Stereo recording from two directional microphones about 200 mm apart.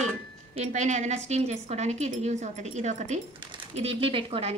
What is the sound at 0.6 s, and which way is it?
A woman's voice, 35° right (ahead or behind).